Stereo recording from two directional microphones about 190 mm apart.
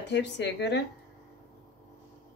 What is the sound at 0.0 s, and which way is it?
Speech, 65° left (ahead or behind).